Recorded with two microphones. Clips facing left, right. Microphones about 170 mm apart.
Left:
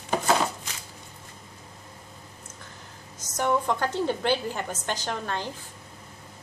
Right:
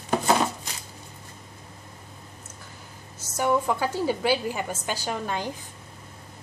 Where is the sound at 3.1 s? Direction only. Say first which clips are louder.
Right 1 dB; 5° right (ahead or behind).